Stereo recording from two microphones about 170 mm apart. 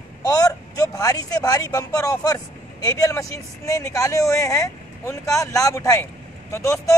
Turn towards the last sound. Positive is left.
turn(degrees=20)  # may be behind; listen again after turning